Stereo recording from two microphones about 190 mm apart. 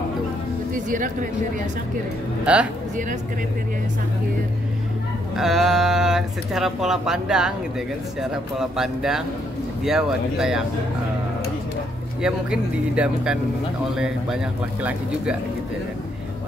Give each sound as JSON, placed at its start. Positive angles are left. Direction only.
{"t": 0.7, "sound": "speech", "side_deg": -45}
{"t": 2.4, "sound": "speech", "side_deg": -5}
{"t": 5.3, "sound": "speech", "side_deg": 0}
{"t": 12.2, "sound": "speech", "side_deg": -5}